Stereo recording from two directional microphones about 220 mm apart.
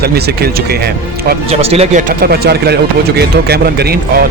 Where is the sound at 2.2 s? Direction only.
45° right (ahead or behind).